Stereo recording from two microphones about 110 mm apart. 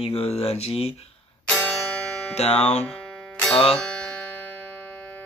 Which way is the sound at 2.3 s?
75° left (ahead or behind).